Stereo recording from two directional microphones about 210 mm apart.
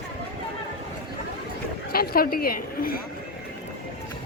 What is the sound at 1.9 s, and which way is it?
A woman's voice, 45° left (ahead or behind).